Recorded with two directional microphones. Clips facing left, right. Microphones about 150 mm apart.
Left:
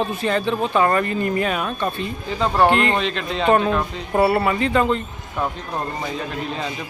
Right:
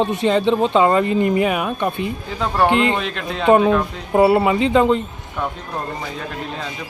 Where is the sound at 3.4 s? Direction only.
15° right (ahead or behind).